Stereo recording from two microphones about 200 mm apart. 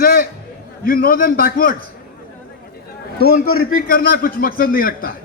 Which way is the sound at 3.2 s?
45° left (ahead or behind).